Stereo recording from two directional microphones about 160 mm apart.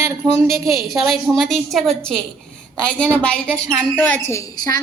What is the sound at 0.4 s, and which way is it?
Speech, 20° right (ahead or behind).